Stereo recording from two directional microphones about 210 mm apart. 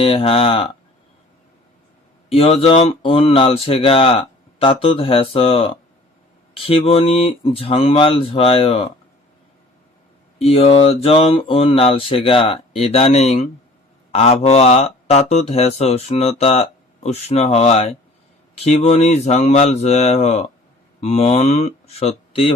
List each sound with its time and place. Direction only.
0.0 s speech: 25° left (ahead or behind)
2.3 s speech: 30° left (ahead or behind)
10.3 s speech: 30° left (ahead or behind)